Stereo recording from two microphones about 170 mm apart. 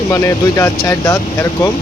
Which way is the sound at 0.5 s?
15° left (ahead or behind).